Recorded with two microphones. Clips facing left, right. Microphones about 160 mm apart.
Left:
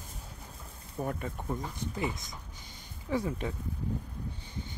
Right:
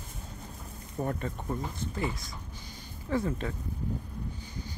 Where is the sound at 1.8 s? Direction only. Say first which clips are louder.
Right 1 dB; 15° left (ahead or behind).